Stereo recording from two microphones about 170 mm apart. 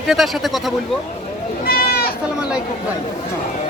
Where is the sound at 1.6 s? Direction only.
65° left (ahead or behind).